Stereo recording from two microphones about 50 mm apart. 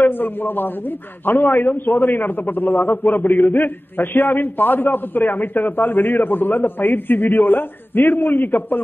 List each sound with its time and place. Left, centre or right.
0.0 s a man's voice: left